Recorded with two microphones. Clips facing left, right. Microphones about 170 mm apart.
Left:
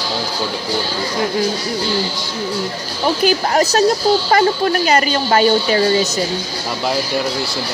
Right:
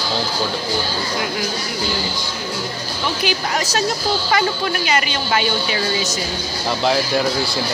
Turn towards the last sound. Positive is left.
turn(degrees=40)  # may be behind; listen again after turning